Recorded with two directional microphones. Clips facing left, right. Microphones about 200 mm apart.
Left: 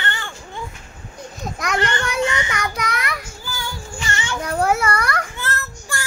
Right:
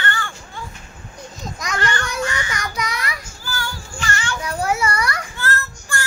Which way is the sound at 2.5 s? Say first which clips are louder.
Left 2 dB; 60° left (ahead or behind).